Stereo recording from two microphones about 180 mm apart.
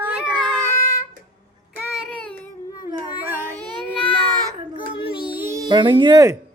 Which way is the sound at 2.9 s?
10° right (ahead or behind).